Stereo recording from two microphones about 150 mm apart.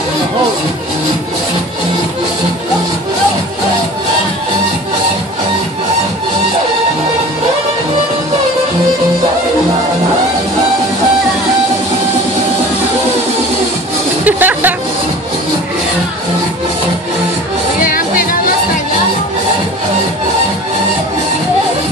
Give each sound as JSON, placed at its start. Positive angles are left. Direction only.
{"t": 14.2, "sound": "music", "side_deg": -10}
{"t": 17.7, "sound": "music", "side_deg": 70}